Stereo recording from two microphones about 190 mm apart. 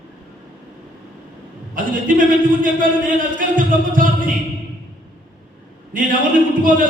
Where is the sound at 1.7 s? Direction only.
45° right (ahead or behind).